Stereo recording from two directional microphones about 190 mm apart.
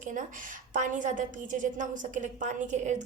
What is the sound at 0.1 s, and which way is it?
A woman's voice, 45° right (ahead or behind).